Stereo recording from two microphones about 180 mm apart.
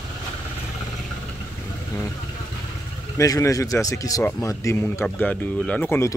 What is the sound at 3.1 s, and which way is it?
Speech, 20° left (ahead or behind).